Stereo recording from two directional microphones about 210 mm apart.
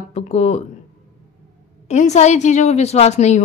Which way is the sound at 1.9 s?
30° left (ahead or behind).